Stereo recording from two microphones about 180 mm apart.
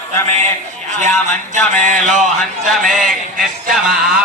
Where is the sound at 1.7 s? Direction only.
45° right (ahead or behind).